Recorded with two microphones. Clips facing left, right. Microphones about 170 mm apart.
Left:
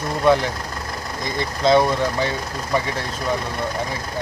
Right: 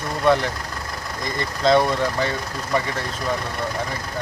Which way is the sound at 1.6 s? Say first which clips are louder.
Left 1 dB; 5° left (ahead or behind).